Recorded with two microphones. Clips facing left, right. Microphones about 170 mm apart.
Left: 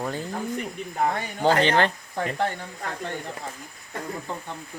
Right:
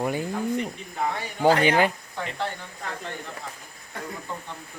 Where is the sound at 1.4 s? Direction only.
10° right (ahead or behind).